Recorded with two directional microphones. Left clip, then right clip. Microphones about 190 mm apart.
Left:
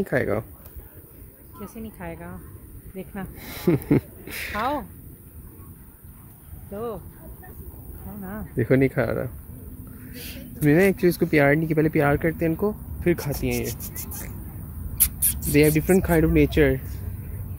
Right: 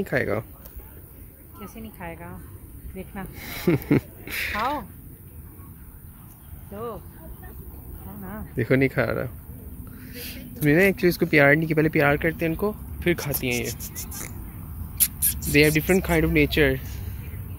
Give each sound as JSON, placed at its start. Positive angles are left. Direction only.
{"t": 0.0, "sound": "speech", "side_deg": 20}
{"t": 1.6, "sound": "speech", "side_deg": 60}
{"t": 3.3, "sound": "speech", "side_deg": 10}
{"t": 6.7, "sound": "speech", "side_deg": 55}
{"t": 8.2, "sound": "a sound", "side_deg": 50}
{"t": 8.5, "sound": "speech", "side_deg": 15}
{"t": 10.1, "sound": "speech", "side_deg": 55}
{"t": 10.5, "sound": "speech", "side_deg": 15}
{"t": 13.3, "sound": "speech", "side_deg": 55}
{"t": 15.0, "sound": "a sound", "side_deg": 55}
{"t": 15.5, "sound": "speech", "side_deg": 15}